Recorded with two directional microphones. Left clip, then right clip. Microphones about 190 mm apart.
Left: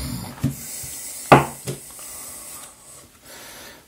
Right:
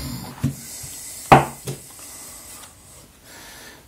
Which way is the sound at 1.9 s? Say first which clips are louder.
Left 1 dB; 35° left (ahead or behind).